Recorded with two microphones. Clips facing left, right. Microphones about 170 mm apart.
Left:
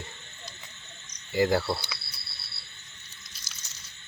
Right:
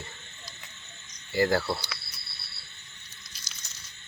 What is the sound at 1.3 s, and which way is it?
Speech, 15° left (ahead or behind).